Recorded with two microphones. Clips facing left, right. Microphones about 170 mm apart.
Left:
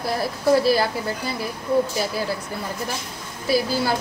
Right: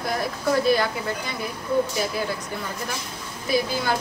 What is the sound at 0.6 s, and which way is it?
Speech, 30° left (ahead or behind).